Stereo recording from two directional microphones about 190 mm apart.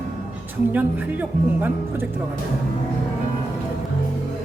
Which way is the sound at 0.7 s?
10° right (ahead or behind).